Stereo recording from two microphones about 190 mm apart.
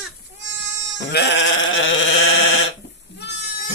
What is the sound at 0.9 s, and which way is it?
Bleat, 60° left (ahead or behind).